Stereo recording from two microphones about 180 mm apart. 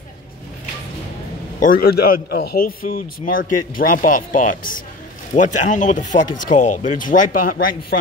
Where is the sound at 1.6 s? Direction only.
55° left (ahead or behind).